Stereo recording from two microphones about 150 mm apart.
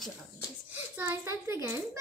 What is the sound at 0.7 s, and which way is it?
A child's voice, 15° right (ahead or behind).